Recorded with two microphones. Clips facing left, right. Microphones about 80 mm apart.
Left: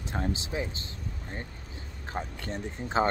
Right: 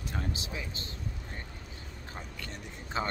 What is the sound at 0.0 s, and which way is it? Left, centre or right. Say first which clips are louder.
Speech: left 5 dB; left.